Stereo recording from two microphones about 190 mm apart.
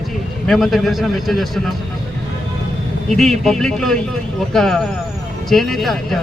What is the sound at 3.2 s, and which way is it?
A man's voice, centre (ahead or behind).